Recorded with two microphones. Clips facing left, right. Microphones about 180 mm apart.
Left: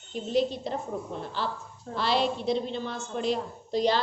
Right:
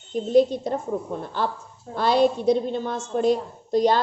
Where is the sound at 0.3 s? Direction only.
45° right (ahead or behind).